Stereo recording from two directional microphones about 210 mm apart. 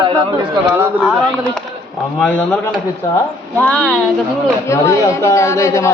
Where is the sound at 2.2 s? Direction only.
5° left (ahead or behind).